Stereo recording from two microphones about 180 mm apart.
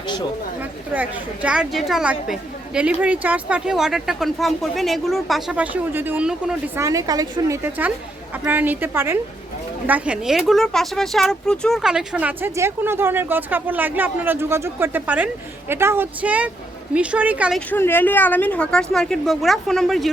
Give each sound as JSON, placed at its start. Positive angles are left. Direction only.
{"t": 0.6, "sound": "a woman's voice", "side_deg": -10}
{"t": 6.8, "sound": "speech", "side_deg": -20}
{"t": 17.7, "sound": "a woman's voice", "side_deg": 10}